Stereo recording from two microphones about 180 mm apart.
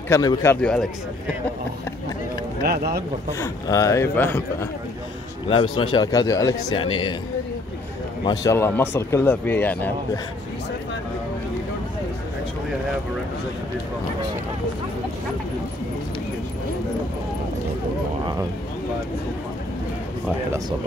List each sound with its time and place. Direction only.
0.1 s speech: 20° left (ahead or behind)
0.6 s speech: 5° left (ahead or behind)
2.6 s speech: 60° right (ahead or behind)
3.3 s speech: 20° left (ahead or behind)
5.5 s a man's voice: 25° left (ahead or behind)
8.3 s speech: 15° left (ahead or behind)